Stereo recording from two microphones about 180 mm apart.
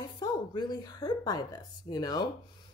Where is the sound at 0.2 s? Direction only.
20° left (ahead or behind).